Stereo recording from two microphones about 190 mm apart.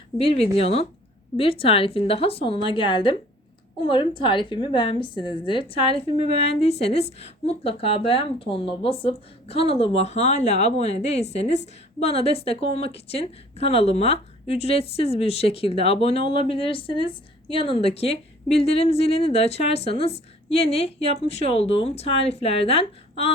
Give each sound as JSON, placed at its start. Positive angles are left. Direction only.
{"t": 0.2, "sound": "a woman's voice", "side_deg": 30}